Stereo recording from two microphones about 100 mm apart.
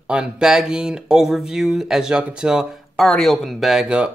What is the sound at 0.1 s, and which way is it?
Speech, 10° right (ahead or behind).